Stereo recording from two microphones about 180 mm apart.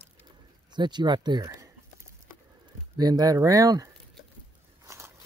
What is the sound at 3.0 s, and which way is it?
Speech, 20° right (ahead or behind).